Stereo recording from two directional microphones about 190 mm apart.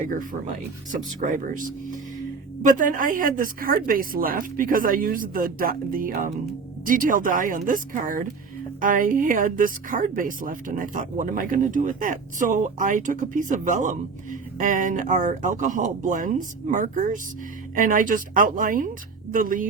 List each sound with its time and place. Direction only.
0.9 s a woman's voice: 40° right (ahead or behind)